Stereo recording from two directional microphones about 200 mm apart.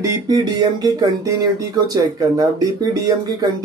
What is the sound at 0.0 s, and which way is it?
Speech, 15° right (ahead or behind).